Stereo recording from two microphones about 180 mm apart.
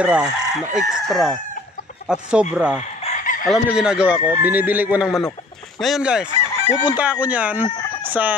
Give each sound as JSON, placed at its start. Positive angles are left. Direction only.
{"t": 0.0, "sound": "chicken", "side_deg": -5}
{"t": 2.5, "sound": "speech", "side_deg": -5}
{"t": 3.0, "sound": "chicken", "side_deg": 40}
{"t": 3.4, "sound": "speech", "side_deg": -5}
{"t": 5.8, "sound": "chicken", "side_deg": 0}
{"t": 6.8, "sound": "speech", "side_deg": -5}